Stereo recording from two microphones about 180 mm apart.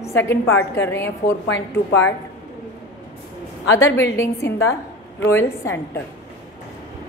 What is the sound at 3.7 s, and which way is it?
A woman's voice, 15° left (ahead or behind).